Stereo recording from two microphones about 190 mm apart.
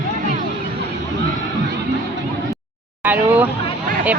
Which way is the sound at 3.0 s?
10° right (ahead or behind).